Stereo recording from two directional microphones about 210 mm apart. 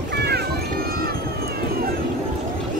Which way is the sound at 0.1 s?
50° right (ahead or behind).